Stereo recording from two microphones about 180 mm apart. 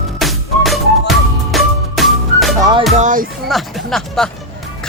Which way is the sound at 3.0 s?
50° right (ahead or behind).